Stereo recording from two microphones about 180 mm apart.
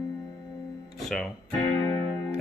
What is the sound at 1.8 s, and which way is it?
Music, 20° left (ahead or behind).